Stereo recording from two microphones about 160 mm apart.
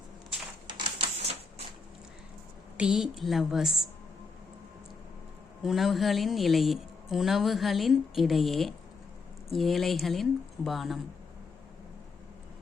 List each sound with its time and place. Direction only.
0.7 s typewriter: 35° right (ahead or behind)
2.7 s speech: 5° right (ahead or behind)
5.6 s speech: centre (ahead or behind)